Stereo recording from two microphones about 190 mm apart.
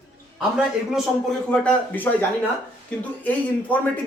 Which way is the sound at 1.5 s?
5° left (ahead or behind).